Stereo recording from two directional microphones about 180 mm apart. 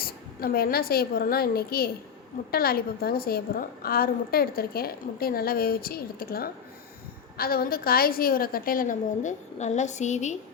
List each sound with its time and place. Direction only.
0.0 s a woman's voice: 55° left (ahead or behind); by 10.3 s 40° left (ahead or behind)